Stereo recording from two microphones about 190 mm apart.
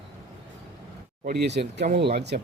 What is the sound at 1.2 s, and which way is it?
Speech, 60° right (ahead or behind).